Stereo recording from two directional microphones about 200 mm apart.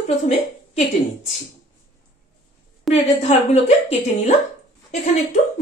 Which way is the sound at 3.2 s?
30° left (ahead or behind).